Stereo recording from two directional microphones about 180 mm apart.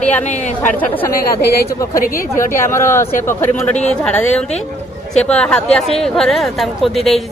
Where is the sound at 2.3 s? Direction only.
15° left (ahead or behind).